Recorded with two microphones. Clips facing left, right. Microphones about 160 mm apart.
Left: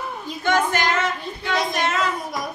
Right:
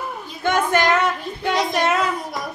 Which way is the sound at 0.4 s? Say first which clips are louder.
Right 2 dB; 55° right (ahead or behind).